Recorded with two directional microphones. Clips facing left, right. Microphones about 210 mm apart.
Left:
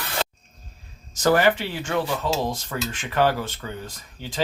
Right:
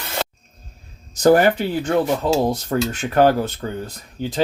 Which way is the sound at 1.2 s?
45° right (ahead or behind).